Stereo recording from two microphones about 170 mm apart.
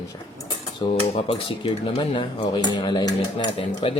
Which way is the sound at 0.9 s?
35° left (ahead or behind).